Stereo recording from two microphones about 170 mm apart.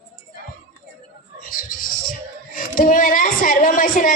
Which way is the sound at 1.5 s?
55° left (ahead or behind).